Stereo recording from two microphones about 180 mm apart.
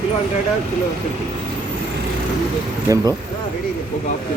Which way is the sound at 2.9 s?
15° right (ahead or behind).